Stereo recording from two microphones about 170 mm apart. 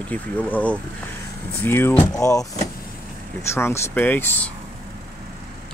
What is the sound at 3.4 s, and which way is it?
Speech, 15° left (ahead or behind).